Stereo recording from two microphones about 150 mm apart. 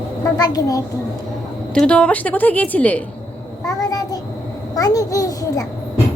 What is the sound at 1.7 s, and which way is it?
A woman's voice, 5° left (ahead or behind).